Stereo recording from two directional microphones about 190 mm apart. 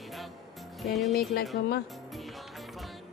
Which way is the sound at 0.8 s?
Centre (ahead or behind).